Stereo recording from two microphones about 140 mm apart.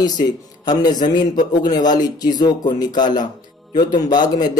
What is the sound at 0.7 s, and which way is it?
Speech, 30° left (ahead or behind).